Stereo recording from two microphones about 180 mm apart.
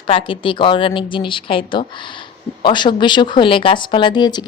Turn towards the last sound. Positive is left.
turn(degrees=25)  # may be behind; listen again after turning